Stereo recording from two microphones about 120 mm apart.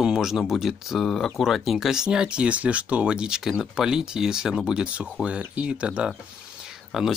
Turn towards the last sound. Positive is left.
turn(degrees=-5)  # may be behind; listen again after turning